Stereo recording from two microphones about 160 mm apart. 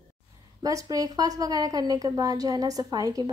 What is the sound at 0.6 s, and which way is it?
Speech, 20° right (ahead or behind).